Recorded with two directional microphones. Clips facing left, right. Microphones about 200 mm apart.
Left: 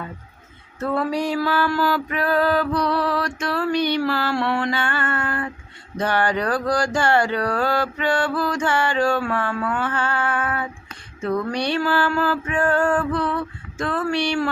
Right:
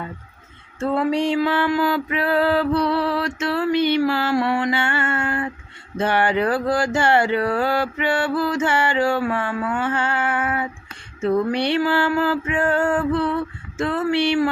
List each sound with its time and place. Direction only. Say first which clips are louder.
0.8 s music: right 2 dB; 25° right (ahead or behind)
5.2 s speech: right 2 dB; 10° right (ahead or behind)
6.0 s music: right 2 dB; 25° right (ahead or behind)
7.7 s speech: even; 10° right (ahead or behind)
8.9 s music: even; 20° right (ahead or behind)
9.1 s speech: right 1 dB; 10° right (ahead or behind)
11.2 s music: right 4 dB; 25° right (ahead or behind)
11.8 s music: right 2 dB; 15° right (ahead or behind)